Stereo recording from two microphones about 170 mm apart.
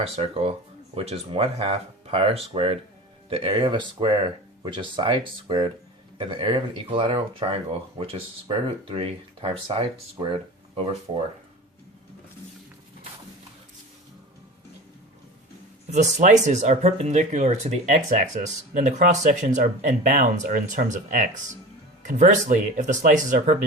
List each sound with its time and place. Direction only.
0.0 s speech: 35° right (ahead or behind)
15.9 s speech: 45° right (ahead or behind)